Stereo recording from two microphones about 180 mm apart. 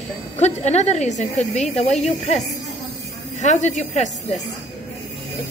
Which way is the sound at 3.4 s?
40° left (ahead or behind).